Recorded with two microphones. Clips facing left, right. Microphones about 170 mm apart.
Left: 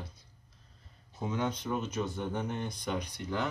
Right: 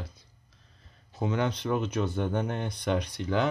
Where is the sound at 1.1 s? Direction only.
75° right (ahead or behind).